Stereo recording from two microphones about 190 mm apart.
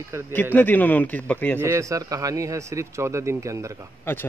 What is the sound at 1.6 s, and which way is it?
A man's voice, 15° right (ahead or behind).